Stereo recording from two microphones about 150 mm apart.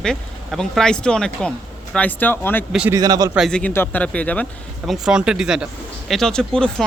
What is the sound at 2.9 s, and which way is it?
Speech, 25° right (ahead or behind).